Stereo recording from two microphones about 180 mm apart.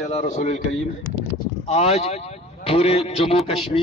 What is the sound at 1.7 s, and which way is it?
A man's voice, 35° left (ahead or behind).